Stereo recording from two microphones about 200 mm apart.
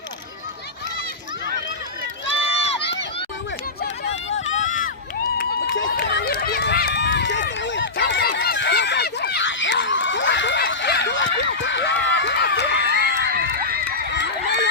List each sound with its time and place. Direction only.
2.4 s run: 30° left (ahead or behind)
4.3 s run: 65° left (ahead or behind)
4.5 s run: 40° left (ahead or behind)
5.4 s run: 60° left (ahead or behind)
12.8 s crowd: 50° right (ahead or behind)
14.1 s run: 60° left (ahead or behind)